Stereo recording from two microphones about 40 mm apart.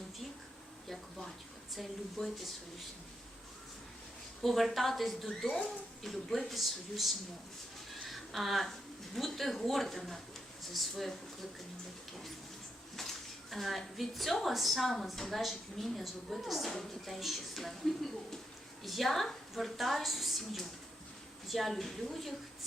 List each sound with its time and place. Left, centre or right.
1.7 s speech: centre
4.4 s a woman's voice: centre
8.0 s a sound: centre
9.1 s a woman's voice: centre
13.0 s a woman's voice: centre